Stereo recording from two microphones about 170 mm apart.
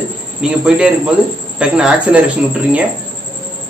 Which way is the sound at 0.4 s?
5° right (ahead or behind).